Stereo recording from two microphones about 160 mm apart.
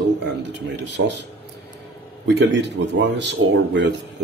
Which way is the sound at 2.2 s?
90° right.